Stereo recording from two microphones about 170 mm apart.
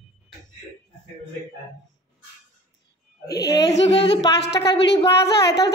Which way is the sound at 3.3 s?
70° left (ahead or behind).